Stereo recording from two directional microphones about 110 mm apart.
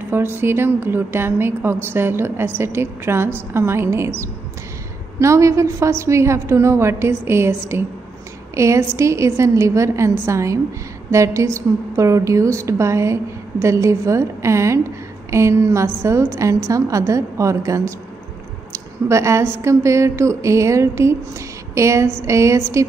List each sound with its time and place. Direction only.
0.1 s a woman's voice: 20° right (ahead or behind)
18.7 s a sound: 25° right (ahead or behind)
19.6 s a woman's voice: 25° right (ahead or behind)